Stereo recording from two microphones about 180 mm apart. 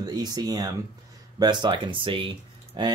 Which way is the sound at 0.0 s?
20° right (ahead or behind).